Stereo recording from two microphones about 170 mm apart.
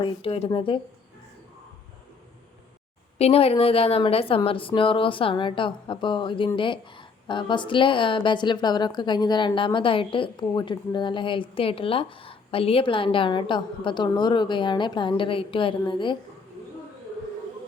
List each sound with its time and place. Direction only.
0.0 s a woman's voice: 35° left (ahead or behind)
3.2 s a woman's voice: 35° left (ahead or behind)